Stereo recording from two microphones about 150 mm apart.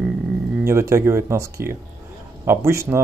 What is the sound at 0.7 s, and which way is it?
A man's voice, 20° right (ahead or behind).